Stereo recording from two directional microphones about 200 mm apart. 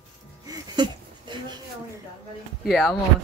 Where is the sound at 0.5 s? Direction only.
20° right (ahead or behind).